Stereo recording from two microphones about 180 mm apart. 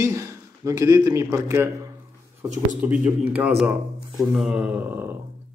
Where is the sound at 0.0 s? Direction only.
15° right (ahead or behind).